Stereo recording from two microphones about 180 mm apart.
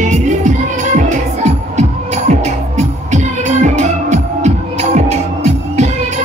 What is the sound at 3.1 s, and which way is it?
Music, 40° right (ahead or behind).